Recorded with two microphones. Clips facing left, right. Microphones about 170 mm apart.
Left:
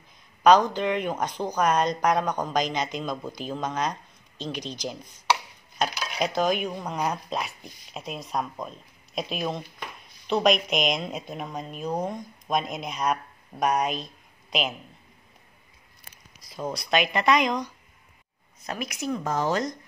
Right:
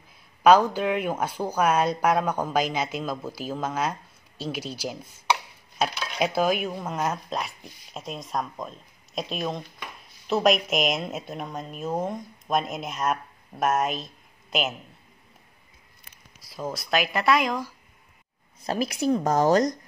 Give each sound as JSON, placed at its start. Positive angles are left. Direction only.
{"t": 0.4, "sound": "a woman's voice", "side_deg": -5}
{"t": 16.3, "sound": "a woman's voice", "side_deg": -5}
{"t": 18.7, "sound": "a woman's voice", "side_deg": -30}